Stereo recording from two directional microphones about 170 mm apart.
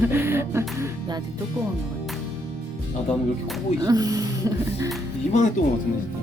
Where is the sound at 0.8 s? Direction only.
25° right (ahead or behind).